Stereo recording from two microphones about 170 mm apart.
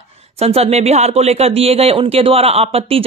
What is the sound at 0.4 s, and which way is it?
Speech, 35° right (ahead or behind).